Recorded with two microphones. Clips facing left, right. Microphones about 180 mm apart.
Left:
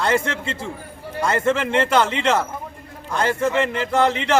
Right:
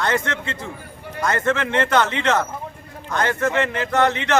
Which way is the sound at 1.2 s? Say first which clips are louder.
Left 1 dB; 10° left (ahead or behind).